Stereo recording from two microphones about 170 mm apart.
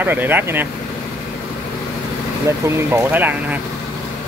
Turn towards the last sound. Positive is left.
turn(degrees=-10)  # may be behind; listen again after turning